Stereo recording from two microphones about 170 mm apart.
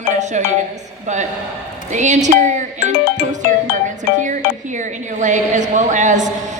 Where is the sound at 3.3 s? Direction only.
45° right (ahead or behind).